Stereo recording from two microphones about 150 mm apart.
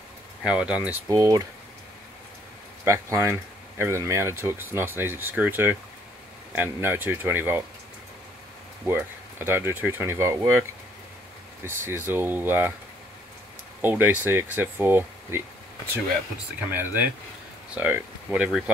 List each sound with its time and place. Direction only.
0.4 s speech: 5° right (ahead or behind)
1.0 s speech: 25° right (ahead or behind)
2.8 s speech: 20° right (ahead or behind)
8.8 s speech: 15° right (ahead or behind)
11.6 s speech: 15° right (ahead or behind)
13.7 s speech: 15° right (ahead or behind)
16.7 s speech: 10° right (ahead or behind)